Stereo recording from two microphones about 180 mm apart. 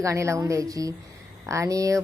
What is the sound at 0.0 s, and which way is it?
Speech, 15° right (ahead or behind).